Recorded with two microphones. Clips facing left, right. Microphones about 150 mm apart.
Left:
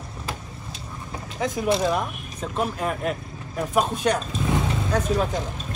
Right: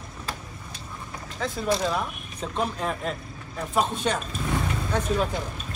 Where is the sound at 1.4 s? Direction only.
15° left (ahead or behind).